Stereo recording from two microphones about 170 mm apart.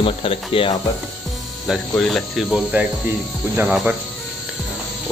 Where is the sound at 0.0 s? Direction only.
30° left (ahead or behind).